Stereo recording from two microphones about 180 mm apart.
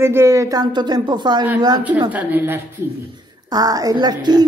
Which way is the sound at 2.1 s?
10° right (ahead or behind).